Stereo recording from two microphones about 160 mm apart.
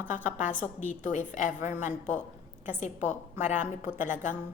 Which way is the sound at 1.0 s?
50° left (ahead or behind).